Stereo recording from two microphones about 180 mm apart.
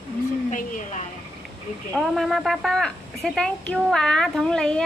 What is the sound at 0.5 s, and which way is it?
Speech, 45° left (ahead or behind).